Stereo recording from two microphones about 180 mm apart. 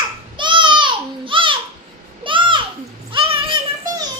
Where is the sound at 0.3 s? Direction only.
25° right (ahead or behind).